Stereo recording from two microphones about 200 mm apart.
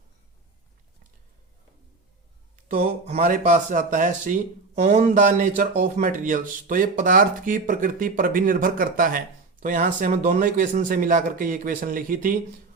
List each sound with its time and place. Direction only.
3.1 s speech: 40° right (ahead or behind)